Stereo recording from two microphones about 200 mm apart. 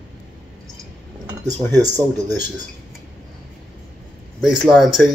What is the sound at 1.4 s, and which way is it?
Speech, 20° right (ahead or behind).